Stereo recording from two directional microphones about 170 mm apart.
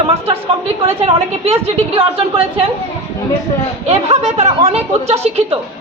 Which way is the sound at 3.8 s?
40° right (ahead or behind).